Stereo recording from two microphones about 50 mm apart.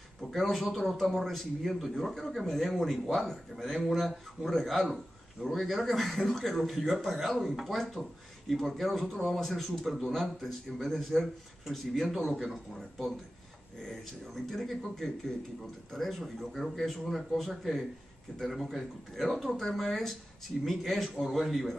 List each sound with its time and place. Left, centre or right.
0.2 s a man's voice: centre
13.8 s a man's voice: centre